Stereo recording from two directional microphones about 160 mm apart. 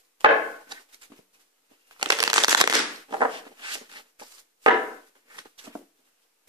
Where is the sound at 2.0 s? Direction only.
25° right (ahead or behind).